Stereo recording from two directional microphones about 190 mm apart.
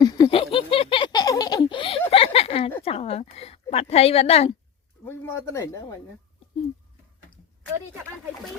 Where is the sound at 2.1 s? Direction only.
30° left (ahead or behind).